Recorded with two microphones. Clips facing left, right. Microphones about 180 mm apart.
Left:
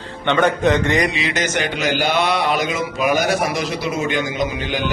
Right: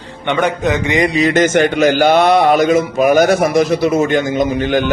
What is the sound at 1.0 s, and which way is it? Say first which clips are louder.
Speech: right 9 dB; 45° right (ahead or behind).